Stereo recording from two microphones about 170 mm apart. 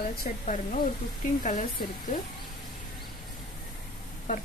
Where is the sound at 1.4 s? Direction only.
45° left (ahead or behind).